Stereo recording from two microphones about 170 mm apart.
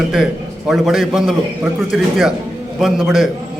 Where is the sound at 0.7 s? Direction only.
Centre (ahead or behind).